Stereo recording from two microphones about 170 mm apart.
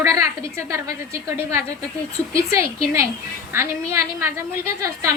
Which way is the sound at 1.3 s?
15° right (ahead or behind).